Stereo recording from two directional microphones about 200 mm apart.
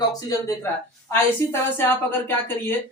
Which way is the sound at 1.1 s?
10° left (ahead or behind).